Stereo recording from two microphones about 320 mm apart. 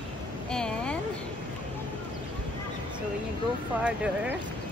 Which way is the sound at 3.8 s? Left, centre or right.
Centre.